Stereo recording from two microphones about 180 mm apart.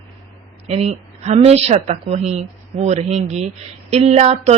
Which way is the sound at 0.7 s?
35° right (ahead or behind).